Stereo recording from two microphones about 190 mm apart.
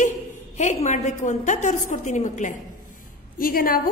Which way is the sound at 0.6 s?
35° left (ahead or behind).